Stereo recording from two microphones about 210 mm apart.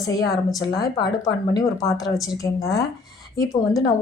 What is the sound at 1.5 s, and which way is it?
A woman's voice, 20° left (ahead or behind).